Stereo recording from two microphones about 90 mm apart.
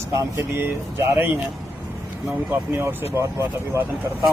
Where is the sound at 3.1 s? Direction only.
30° right (ahead or behind).